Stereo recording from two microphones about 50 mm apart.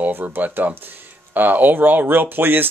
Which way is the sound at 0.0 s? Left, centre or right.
Right.